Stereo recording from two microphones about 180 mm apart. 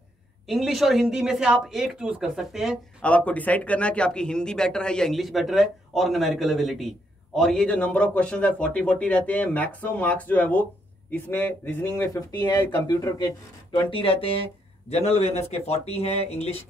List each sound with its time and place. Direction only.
0.5 s a man's voice: centre (ahead or behind); by 16.6 s 35° left (ahead or behind)